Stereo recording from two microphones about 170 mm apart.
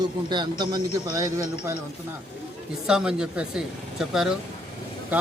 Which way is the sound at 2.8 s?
5° right (ahead or behind).